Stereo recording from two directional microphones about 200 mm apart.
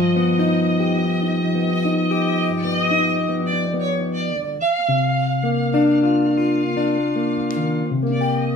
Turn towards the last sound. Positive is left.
turn(degrees=50)  # may be behind; listen again after turning